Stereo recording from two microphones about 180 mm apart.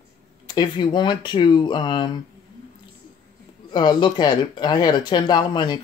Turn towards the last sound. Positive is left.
turn(degrees=25)  # may be behind; listen again after turning